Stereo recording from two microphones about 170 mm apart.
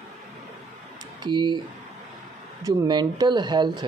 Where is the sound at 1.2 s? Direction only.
25° right (ahead or behind).